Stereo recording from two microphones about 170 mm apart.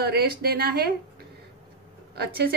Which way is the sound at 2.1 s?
70° right (ahead or behind).